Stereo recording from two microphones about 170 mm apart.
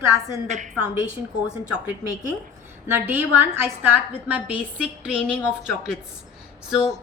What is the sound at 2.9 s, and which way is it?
A woman's voice, 10° right (ahead or behind).